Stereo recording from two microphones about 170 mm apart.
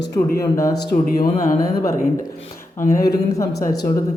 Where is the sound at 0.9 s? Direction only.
50° left (ahead or behind).